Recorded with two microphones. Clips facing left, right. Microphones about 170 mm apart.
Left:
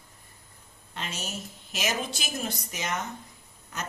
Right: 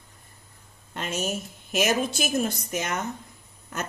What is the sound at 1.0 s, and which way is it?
A woman's voice, 50° right (ahead or behind).